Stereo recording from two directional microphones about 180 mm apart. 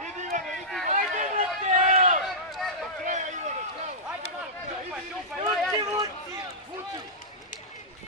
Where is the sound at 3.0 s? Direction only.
45° right (ahead or behind).